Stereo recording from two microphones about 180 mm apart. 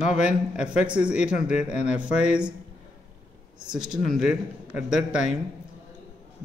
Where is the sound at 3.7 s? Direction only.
5° right (ahead or behind).